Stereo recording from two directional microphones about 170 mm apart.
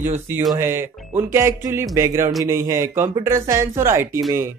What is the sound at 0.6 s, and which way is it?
Speech, 15° right (ahead or behind).